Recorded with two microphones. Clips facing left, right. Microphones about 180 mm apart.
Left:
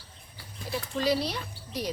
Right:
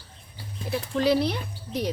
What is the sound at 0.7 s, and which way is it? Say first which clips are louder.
Speech: right 5 dB; 60° right (ahead or behind).